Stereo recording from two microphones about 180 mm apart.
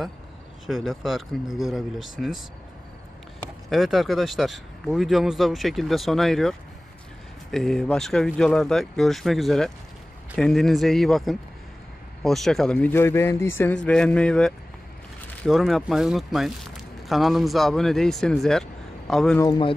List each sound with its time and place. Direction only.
0.7 s speech: centre (ahead or behind)
3.7 s speech: centre (ahead or behind)
7.5 s speech: 5° left (ahead or behind)
19.4 s a man's voice: 25° left (ahead or behind)